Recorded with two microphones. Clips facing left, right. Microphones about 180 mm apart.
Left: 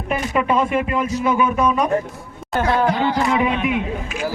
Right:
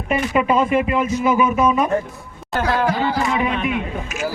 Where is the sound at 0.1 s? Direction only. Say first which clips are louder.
Right 2 dB; 5° right (ahead or behind).